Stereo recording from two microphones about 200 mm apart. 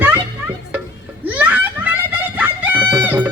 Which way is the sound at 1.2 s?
10° right (ahead or behind).